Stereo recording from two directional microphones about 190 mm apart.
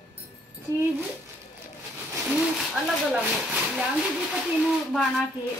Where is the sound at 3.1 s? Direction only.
5° right (ahead or behind).